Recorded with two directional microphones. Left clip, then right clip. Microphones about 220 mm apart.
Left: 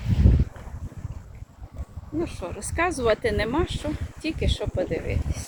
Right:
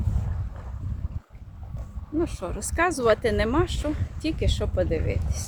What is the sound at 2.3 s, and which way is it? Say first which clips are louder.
Speech: right 1 dB; 10° right (ahead or behind).